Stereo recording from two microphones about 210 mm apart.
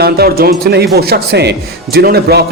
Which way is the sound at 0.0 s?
45° right (ahead or behind).